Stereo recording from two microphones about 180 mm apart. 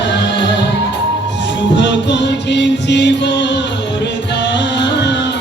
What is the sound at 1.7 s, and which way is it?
Music, 75° left (ahead or behind).